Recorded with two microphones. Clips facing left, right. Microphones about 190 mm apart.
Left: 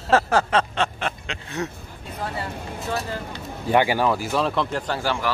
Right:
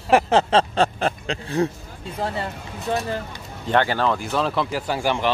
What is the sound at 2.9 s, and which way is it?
Speech, 20° right (ahead or behind).